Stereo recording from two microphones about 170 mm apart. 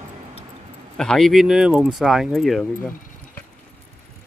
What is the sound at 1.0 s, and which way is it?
Speech, 5° left (ahead or behind).